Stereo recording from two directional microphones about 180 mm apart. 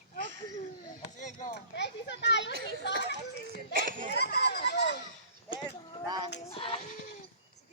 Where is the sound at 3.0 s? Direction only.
70° left (ahead or behind).